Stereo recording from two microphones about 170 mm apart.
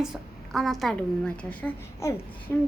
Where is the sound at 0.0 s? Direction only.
Centre (ahead or behind).